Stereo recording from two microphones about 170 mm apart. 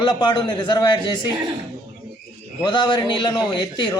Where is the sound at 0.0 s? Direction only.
25° left (ahead or behind).